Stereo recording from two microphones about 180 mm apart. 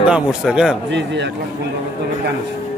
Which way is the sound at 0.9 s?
80° right.